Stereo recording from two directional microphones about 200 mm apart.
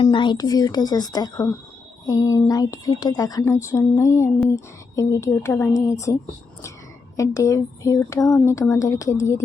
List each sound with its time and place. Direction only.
0.0 s a woman's voice: 25° left (ahead or behind)
7.2 s speech: 15° left (ahead or behind)